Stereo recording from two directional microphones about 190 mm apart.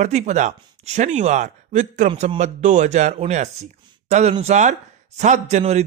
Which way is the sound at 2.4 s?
40° right (ahead or behind).